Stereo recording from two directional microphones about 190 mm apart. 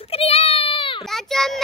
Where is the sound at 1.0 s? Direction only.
Centre (ahead or behind).